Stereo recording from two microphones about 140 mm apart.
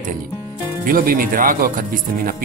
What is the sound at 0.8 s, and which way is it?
Speech, 85° right.